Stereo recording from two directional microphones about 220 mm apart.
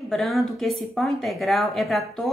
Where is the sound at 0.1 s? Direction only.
Centre (ahead or behind).